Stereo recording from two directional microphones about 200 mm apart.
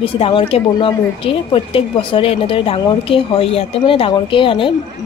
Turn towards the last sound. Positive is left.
turn(degrees=25)  # may be behind; listen again after turning